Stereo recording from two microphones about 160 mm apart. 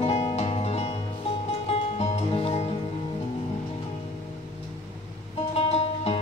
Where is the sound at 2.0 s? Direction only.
35° left (ahead or behind).